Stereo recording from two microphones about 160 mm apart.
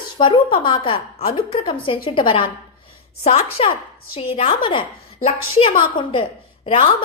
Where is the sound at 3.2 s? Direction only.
40° left (ahead or behind).